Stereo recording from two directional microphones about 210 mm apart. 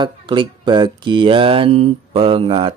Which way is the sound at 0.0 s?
20° right (ahead or behind).